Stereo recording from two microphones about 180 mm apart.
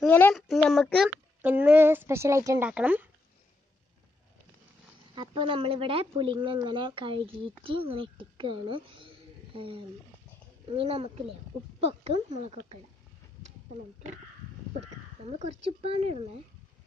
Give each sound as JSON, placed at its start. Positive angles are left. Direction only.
{"t": 0.0, "sound": "speech", "side_deg": 5}
{"t": 1.4, "sound": "speech", "side_deg": -10}
{"t": 5.1, "sound": "a woman's voice", "side_deg": -25}
{"t": 15.3, "sound": "speech", "side_deg": -35}